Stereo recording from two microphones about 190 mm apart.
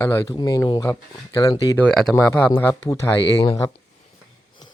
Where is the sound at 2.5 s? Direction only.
15° left (ahead or behind).